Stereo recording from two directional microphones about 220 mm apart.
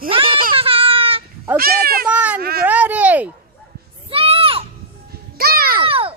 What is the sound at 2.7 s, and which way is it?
Speech, 5° right (ahead or behind).